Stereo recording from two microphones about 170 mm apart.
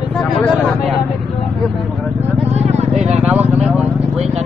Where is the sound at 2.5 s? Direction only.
40° right (ahead or behind).